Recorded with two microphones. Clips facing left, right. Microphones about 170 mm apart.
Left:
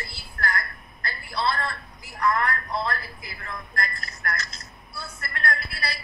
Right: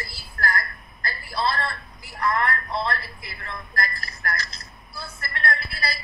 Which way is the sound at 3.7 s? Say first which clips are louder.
Right 3 dB; 35° right (ahead or behind).